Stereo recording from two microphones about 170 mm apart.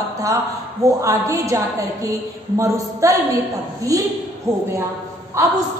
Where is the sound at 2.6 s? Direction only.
20° right (ahead or behind).